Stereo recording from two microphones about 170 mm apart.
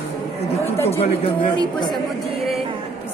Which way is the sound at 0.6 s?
15° left (ahead or behind).